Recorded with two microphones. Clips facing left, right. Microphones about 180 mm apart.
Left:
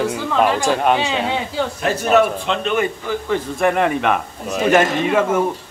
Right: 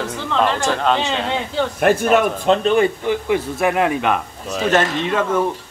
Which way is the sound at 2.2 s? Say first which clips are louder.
Right 2 dB; 40° right (ahead or behind).